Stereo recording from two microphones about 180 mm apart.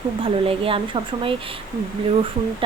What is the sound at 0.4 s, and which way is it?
Speech, 30° right (ahead or behind).